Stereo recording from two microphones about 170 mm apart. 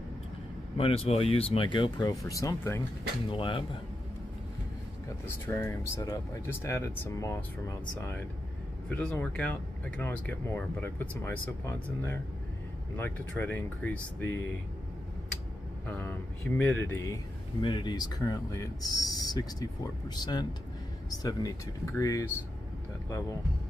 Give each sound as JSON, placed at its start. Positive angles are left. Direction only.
{"t": 0.7, "sound": "speech", "side_deg": 35}
{"t": 3.3, "sound": "speech", "side_deg": 30}
{"t": 5.2, "sound": "speech", "side_deg": 15}
{"t": 15.9, "sound": "speech", "side_deg": 10}
{"t": 17.6, "sound": "speech", "side_deg": 30}